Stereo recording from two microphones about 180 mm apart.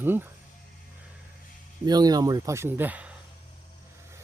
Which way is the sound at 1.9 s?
20° right (ahead or behind).